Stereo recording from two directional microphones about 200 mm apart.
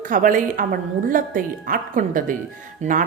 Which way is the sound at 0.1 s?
40° right (ahead or behind).